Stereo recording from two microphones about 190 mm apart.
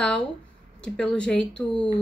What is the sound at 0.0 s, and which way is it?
A woman's voice, 5° left (ahead or behind).